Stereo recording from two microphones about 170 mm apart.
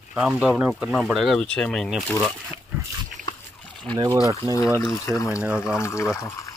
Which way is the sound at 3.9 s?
25° right (ahead or behind).